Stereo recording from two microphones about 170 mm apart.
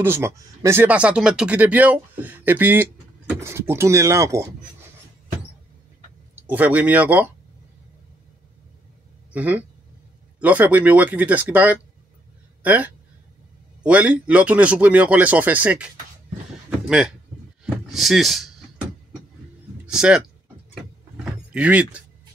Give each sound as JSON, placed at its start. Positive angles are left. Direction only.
{"t": 0.0, "sound": "speech", "side_deg": -15}
{"t": 6.3, "sound": "speech", "side_deg": -10}
{"t": 9.3, "sound": "speech", "side_deg": -10}
{"t": 19.9, "sound": "speech", "side_deg": -5}
{"t": 20.7, "sound": "vehicle", "side_deg": -5}